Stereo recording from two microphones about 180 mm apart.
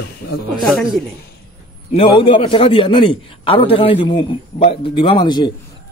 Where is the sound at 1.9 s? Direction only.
30° left (ahead or behind).